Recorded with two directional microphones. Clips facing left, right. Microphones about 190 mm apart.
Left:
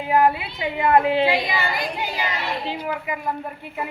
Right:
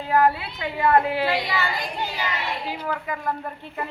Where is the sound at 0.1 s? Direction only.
15° left (ahead or behind).